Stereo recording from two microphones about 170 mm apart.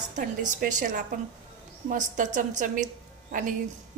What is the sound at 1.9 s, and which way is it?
Speech, 50° right (ahead or behind).